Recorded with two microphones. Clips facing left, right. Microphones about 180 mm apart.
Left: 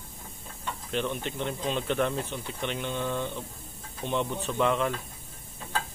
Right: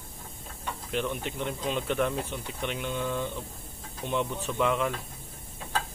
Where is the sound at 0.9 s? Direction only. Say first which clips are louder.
Even; 5° right (ahead or behind).